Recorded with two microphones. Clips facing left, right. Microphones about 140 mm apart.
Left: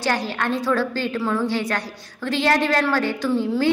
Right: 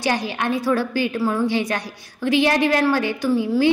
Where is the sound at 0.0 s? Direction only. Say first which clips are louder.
Right 1 dB; 15° right (ahead or behind).